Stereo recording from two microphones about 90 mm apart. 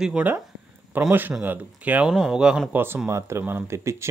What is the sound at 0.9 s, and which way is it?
Speech, 20° right (ahead or behind).